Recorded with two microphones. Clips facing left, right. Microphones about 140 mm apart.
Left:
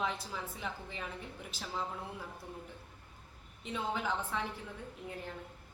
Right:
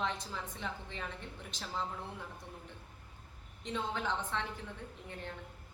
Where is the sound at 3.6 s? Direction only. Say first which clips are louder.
Left 1 dB; 5° left (ahead or behind).